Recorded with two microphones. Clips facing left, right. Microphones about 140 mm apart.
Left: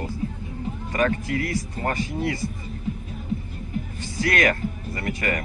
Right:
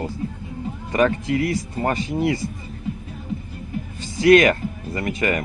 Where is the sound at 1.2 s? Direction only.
20° right (ahead or behind).